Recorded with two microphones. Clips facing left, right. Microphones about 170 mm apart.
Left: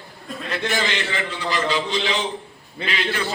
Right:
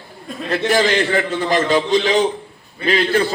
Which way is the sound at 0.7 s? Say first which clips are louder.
Right 10 dB; 45° right (ahead or behind).